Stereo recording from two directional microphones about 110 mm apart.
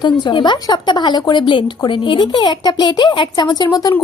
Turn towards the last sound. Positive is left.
turn(degrees=40)  # may be behind; listen again after turning